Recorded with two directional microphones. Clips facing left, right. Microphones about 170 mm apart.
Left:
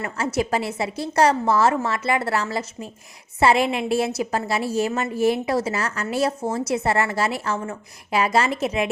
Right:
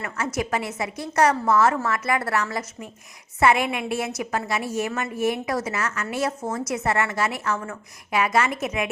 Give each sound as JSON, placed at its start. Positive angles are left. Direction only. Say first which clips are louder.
{"t": 0.0, "sound": "a woman's voice", "louder": "left 3 dB", "side_deg": 30}